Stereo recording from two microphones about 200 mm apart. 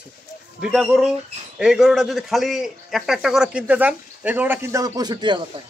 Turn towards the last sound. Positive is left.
turn(degrees=-20)  # may be behind; listen again after turning